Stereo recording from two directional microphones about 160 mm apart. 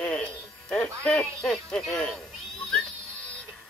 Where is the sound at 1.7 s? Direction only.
5° left (ahead or behind).